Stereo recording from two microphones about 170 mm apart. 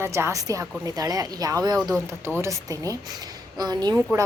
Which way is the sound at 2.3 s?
20° right (ahead or behind).